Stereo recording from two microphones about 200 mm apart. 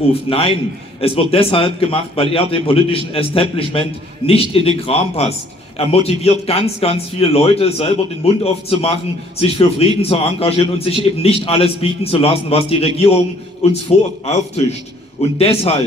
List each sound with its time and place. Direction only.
0.1 s a man's voice: 30° left (ahead or behind)